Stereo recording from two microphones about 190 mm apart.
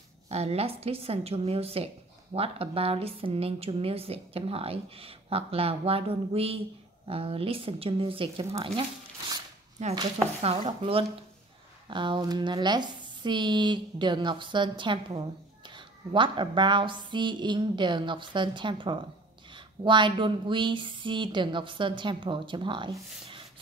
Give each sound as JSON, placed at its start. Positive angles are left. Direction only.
{"t": 0.3, "sound": "a woman's voice", "side_deg": -35}
{"t": 9.8, "sound": "a woman's voice", "side_deg": -35}